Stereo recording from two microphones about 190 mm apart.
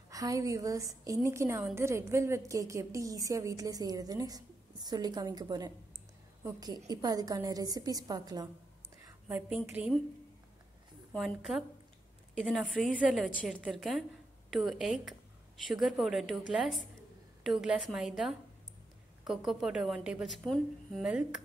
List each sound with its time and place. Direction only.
0.1 s a woman's voice: 20° right (ahead or behind)
9.3 s a woman's voice: 10° right (ahead or behind)
11.1 s a woman's voice: centre (ahead or behind)